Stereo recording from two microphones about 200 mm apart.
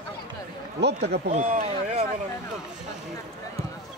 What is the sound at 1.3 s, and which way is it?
Speech, 35° right (ahead or behind).